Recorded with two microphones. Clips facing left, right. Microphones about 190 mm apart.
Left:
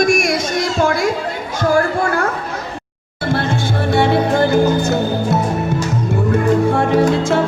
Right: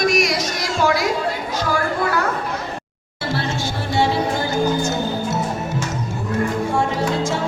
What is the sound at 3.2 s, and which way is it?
Music, 50° left (ahead or behind).